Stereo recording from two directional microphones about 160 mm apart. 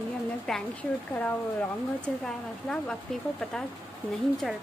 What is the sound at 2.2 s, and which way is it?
Speech, 5° left (ahead or behind).